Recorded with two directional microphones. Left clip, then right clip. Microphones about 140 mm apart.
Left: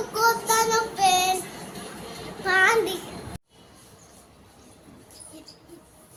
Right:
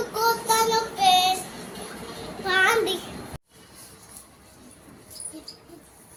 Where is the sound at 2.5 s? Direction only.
5° left (ahead or behind).